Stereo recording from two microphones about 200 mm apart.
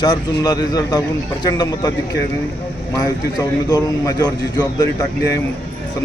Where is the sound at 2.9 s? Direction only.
15° left (ahead or behind).